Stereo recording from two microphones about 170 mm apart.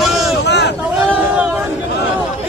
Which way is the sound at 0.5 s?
90° left.